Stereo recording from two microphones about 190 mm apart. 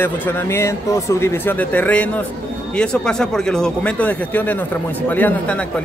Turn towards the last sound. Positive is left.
turn(degrees=10)  # may be behind; listen again after turning